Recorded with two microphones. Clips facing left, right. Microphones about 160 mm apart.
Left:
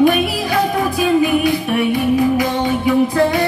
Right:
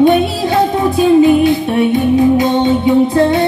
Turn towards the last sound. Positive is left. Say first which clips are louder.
# right 4 dB
turn(degrees=-25)  # may be behind; listen again after turning